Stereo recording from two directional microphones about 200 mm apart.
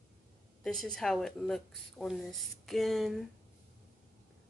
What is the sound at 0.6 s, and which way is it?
Speech, centre (ahead or behind).